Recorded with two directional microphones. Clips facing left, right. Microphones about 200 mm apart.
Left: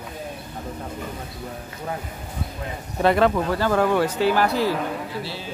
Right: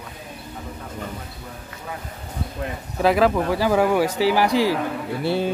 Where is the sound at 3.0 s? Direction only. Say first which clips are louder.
Right 1 dB; 5° right (ahead or behind).